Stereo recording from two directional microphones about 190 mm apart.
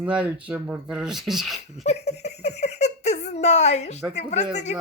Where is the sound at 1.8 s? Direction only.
35° left (ahead or behind).